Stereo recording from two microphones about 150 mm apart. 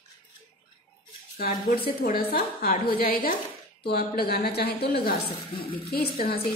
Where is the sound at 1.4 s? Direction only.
85° left.